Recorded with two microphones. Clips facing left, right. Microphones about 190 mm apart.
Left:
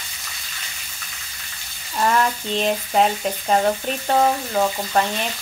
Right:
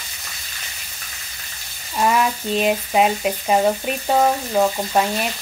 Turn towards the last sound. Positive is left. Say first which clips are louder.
# right 2 dB
turn(degrees=-10)  # may be behind; listen again after turning